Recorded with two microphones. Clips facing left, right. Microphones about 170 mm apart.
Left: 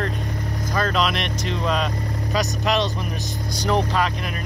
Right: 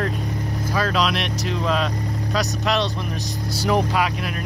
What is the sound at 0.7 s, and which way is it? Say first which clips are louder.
Speech: even; 5° right (ahead or behind).